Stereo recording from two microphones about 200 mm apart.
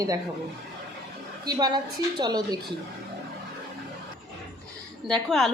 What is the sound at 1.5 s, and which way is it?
A woman's voice, 20° right (ahead or behind).